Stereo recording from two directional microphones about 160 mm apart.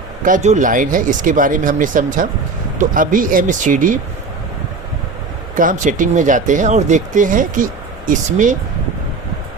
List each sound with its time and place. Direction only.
0.3 s speech: 50° right (ahead or behind)
5.5 s speech: 55° right (ahead or behind)